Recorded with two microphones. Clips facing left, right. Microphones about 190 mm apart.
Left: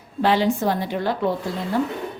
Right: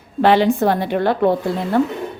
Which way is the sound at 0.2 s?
65° right (ahead or behind).